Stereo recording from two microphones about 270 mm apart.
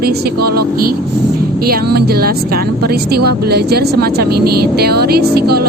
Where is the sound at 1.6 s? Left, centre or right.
Right.